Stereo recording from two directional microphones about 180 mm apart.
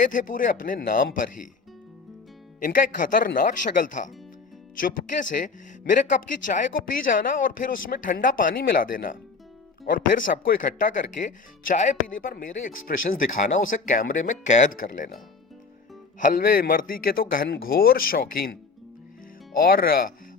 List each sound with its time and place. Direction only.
0.0 s speech: 45° left (ahead or behind)
2.6 s speech: 50° left (ahead or behind)
16.2 s speech: 50° left (ahead or behind)
19.5 s speech: 55° left (ahead or behind)